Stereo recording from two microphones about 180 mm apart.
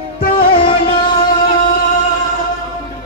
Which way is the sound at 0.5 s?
30° left (ahead or behind).